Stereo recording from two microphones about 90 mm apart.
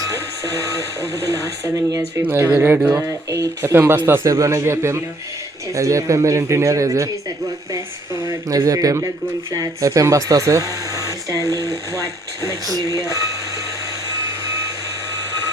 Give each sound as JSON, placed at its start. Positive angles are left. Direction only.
{"t": 0.7, "sound": "speech", "side_deg": -40}
{"t": 2.6, "sound": "speech", "side_deg": -25}
{"t": 3.7, "sound": "a man's voice", "side_deg": -25}